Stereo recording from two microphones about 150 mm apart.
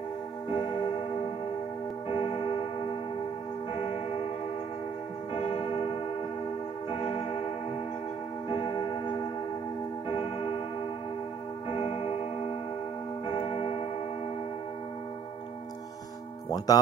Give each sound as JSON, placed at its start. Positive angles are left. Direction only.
{"t": 2.0, "sound": "tick-tock", "side_deg": 35}
{"t": 5.3, "sound": "tubular bells", "side_deg": 40}
{"t": 6.9, "sound": "tick-tock", "side_deg": 35}
{"t": 8.5, "sound": "tick-tock", "side_deg": 35}
{"t": 11.7, "sound": "tick-tock", "side_deg": 35}
{"t": 13.3, "sound": "tick-tock", "side_deg": 35}
{"t": 16.4, "sound": "music", "side_deg": 25}